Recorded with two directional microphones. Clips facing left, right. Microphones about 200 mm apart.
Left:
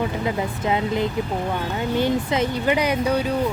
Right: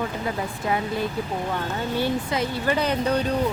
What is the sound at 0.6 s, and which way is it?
Speech, 20° left (ahead or behind).